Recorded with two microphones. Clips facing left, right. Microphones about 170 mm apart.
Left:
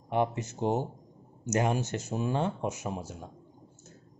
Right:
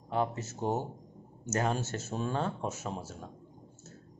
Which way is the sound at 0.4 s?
15° left (ahead or behind).